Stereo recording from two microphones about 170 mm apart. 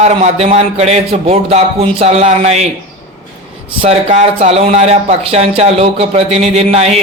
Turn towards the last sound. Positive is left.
turn(degrees=-40)  # may be behind; listen again after turning